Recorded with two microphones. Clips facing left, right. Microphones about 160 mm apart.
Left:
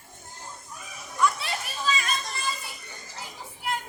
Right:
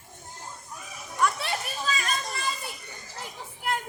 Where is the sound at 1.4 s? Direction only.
40° right (ahead or behind).